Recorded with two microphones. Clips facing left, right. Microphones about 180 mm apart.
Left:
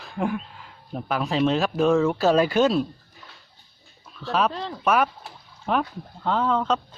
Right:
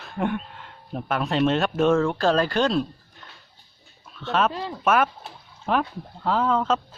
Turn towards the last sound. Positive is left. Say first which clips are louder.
# right 1 dB
turn(degrees=-5)  # may be behind; listen again after turning